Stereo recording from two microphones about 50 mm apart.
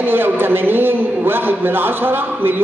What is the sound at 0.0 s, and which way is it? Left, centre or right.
A man's voice, right.